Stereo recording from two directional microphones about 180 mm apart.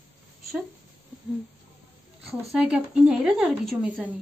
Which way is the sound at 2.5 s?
5° right (ahead or behind).